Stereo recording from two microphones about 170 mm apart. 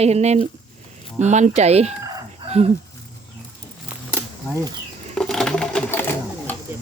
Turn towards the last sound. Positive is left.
turn(degrees=10)  # may be behind; listen again after turning